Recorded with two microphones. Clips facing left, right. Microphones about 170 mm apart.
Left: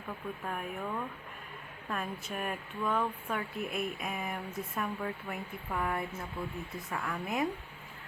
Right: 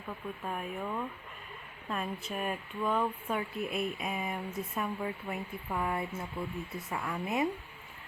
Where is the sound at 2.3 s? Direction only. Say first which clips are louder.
Right 1 dB; 5° right (ahead or behind).